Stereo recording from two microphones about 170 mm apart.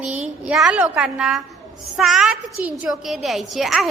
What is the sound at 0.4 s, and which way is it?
A woman's voice, 5° right (ahead or behind).